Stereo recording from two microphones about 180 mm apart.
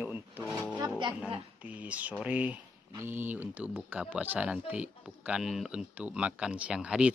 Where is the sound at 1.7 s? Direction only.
10° right (ahead or behind).